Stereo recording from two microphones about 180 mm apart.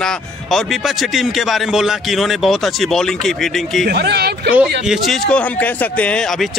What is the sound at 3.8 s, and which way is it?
Speech, 65° right (ahead or behind).